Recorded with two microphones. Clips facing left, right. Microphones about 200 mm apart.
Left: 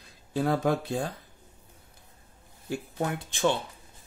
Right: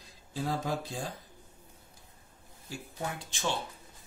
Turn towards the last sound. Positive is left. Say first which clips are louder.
# left 8 dB
turn(degrees=55)  # may be behind; listen again after turning